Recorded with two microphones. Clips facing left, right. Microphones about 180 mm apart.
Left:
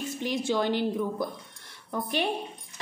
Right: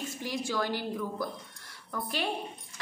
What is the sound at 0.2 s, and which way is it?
A woman's voice, 25° left (ahead or behind).